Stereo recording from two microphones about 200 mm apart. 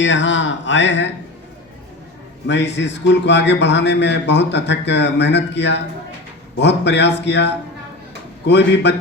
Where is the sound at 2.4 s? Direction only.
60° left (ahead or behind).